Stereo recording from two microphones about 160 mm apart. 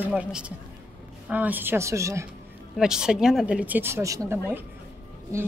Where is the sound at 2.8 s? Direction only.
5° right (ahead or behind).